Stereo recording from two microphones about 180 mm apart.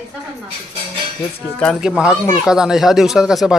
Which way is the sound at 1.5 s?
Centre (ahead or behind).